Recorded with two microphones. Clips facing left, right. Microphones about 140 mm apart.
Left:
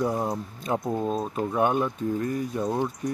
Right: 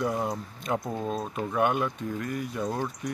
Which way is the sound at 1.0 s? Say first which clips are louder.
Left 4 dB; centre (ahead or behind).